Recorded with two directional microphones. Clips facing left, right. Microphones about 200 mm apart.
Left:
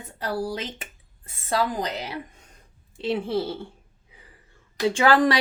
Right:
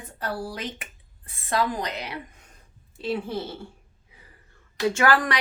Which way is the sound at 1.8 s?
35° left (ahead or behind).